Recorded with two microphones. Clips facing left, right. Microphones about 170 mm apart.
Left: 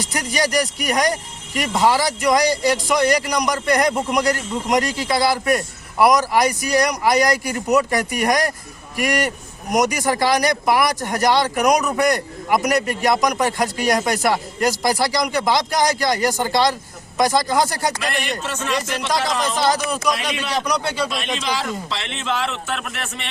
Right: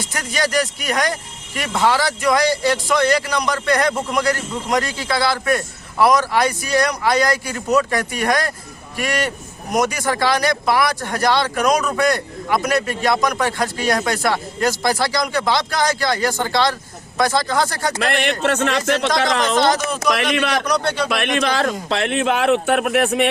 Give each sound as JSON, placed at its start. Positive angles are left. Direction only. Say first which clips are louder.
{"t": 0.1, "sound": "speech", "louder": "even", "side_deg": 15}
{"t": 18.0, "sound": "a man's voice", "louder": "right 6 dB", "side_deg": -60}
{"t": 19.5, "sound": "speech", "louder": "right 2 dB", "side_deg": 10}
{"t": 20.3, "sound": "a man's voice", "louder": "right 6 dB", "side_deg": -70}
{"t": 20.7, "sound": "speech", "louder": "right 2 dB", "side_deg": 10}
{"t": 21.1, "sound": "a man's voice", "louder": "right 5 dB", "side_deg": -60}